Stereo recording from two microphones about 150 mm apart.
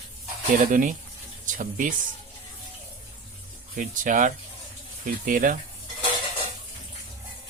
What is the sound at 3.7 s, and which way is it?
Speech, 60° right (ahead or behind).